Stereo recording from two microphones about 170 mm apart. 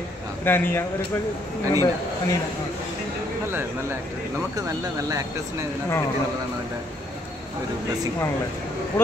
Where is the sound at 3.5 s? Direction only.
15° right (ahead or behind).